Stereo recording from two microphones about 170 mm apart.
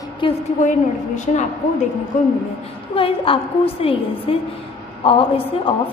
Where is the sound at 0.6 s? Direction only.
45° left (ahead or behind).